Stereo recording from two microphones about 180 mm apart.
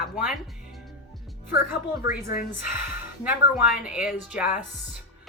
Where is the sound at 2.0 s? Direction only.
15° right (ahead or behind).